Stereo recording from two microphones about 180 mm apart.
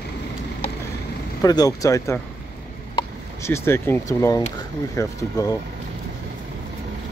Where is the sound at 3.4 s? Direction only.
15° left (ahead or behind).